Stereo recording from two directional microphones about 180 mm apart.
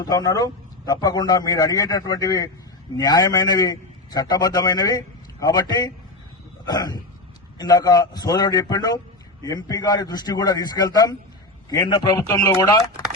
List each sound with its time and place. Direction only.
0.0 s a man's voice: 20° left (ahead or behind)